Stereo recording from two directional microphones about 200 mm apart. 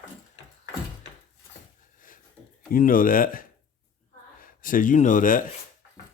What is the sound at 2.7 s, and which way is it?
Speech, 45° left (ahead or behind).